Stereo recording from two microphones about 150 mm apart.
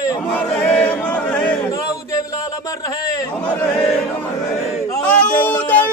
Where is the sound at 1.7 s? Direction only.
20° left (ahead or behind).